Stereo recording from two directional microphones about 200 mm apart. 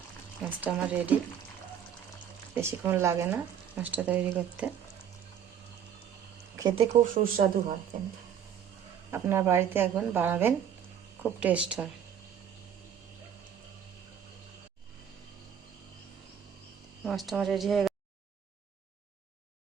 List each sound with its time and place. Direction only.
0.6 s speech: 10° right (ahead or behind)
2.6 s speech: 10° right (ahead or behind)
6.6 s speech: 20° right (ahead or behind)
7.0 s speech: 40° right (ahead or behind)
9.0 s speech: 15° right (ahead or behind)
17.0 s speech: centre (ahead or behind)